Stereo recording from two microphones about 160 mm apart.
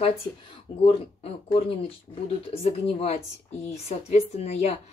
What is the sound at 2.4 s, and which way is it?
Speech, 40° left (ahead or behind).